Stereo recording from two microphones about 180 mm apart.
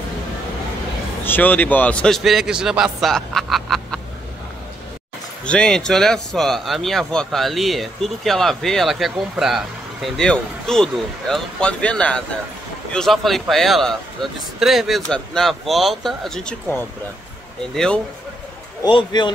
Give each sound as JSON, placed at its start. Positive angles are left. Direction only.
{"t": 1.2, "sound": "speech", "side_deg": 10}
{"t": 5.4, "sound": "speech", "side_deg": 5}
{"t": 18.8, "sound": "speech", "side_deg": 25}